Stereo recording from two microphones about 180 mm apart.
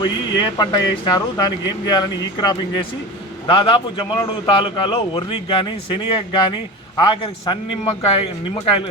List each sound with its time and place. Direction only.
0.0 s speech: 25° left (ahead or behind)